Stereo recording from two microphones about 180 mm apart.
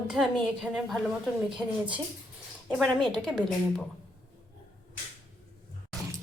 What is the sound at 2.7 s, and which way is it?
Speech, centre (ahead or behind).